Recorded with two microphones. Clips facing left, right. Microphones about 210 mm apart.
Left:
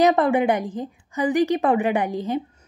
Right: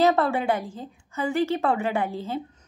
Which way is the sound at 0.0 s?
15° left (ahead or behind).